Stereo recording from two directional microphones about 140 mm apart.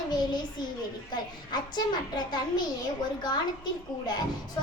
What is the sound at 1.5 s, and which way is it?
A child's voice, 30° left (ahead or behind).